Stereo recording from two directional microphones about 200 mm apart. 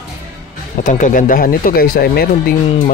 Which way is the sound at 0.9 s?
40° left (ahead or behind).